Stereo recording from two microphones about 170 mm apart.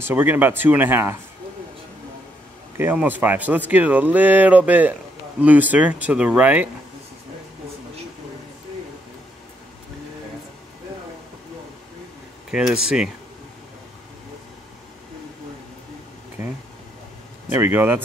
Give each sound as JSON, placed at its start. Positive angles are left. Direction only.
{"t": 0.0, "sound": "speech", "side_deg": -10}
{"t": 2.8, "sound": "speech", "side_deg": -10}
{"t": 12.4, "sound": "speech", "side_deg": -5}
{"t": 16.4, "sound": "a sound", "side_deg": -15}
{"t": 17.5, "sound": "speech", "side_deg": -10}